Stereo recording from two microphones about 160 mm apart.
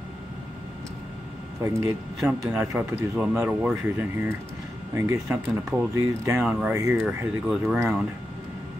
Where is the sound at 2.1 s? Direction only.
5° right (ahead or behind).